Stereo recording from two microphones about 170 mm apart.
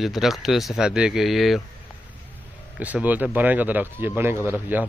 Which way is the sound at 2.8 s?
10° right (ahead or behind).